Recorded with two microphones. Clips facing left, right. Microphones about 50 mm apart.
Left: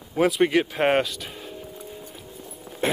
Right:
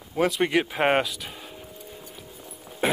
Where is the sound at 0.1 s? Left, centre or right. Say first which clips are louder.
Left 3 dB; centre.